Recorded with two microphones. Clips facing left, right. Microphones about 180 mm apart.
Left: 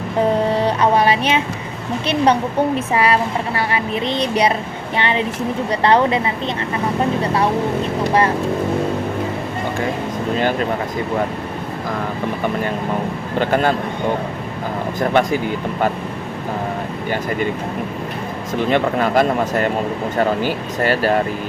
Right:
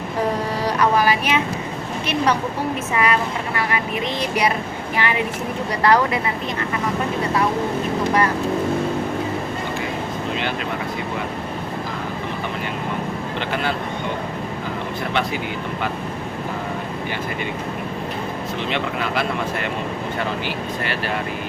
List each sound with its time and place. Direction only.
0.5 s music: 30° left (ahead or behind)
2.0 s speech: 30° left (ahead or behind)
13.4 s speech: 45° left (ahead or behind)
15.1 s speech: 45° left (ahead or behind)
18.7 s speech: 45° left (ahead or behind)